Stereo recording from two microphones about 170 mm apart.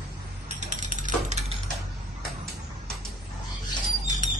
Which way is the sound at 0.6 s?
45° right (ahead or behind).